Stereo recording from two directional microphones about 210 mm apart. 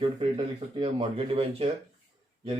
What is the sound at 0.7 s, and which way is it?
Speech, 25° right (ahead or behind).